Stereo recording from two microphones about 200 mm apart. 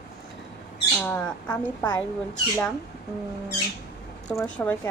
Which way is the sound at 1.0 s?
10° left (ahead or behind).